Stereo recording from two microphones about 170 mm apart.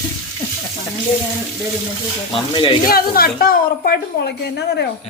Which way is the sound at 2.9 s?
60° left (ahead or behind).